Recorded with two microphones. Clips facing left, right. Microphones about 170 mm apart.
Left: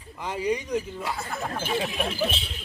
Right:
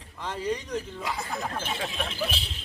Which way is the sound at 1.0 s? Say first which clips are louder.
Left 1 dB; 15° right (ahead or behind).